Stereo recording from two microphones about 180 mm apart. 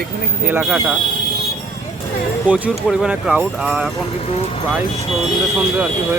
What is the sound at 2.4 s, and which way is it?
Speech, 5° right (ahead or behind).